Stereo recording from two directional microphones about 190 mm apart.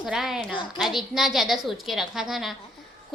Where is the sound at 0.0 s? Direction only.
Centre (ahead or behind).